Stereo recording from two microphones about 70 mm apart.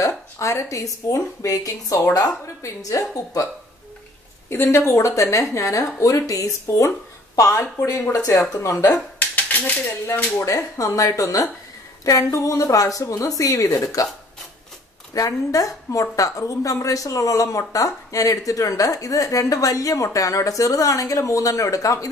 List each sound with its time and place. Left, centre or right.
0.0 s a woman's voice: left
4.5 s a woman's voice: left
8.8 s a sound: left
10.4 s a woman's voice: left
15.1 s a woman's voice: left